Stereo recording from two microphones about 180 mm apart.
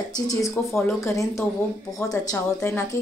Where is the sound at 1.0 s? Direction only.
15° left (ahead or behind).